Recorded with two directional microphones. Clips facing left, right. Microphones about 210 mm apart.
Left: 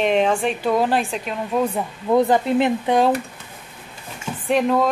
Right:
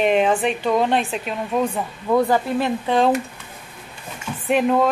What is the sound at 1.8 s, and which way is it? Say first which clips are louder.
Speech: left 1 dB; 15° left (ahead or behind).